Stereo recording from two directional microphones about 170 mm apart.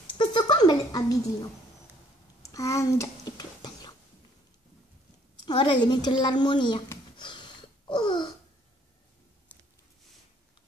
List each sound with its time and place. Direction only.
0.2 s a sound: 25° left (ahead or behind)
5.4 s a woman's voice: 25° left (ahead or behind)
7.2 s wheeze: 25° left (ahead or behind)